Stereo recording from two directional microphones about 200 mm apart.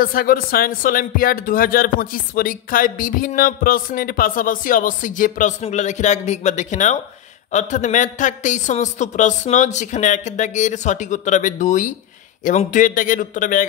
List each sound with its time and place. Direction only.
0.0 s a man's voice: 45° left (ahead or behind)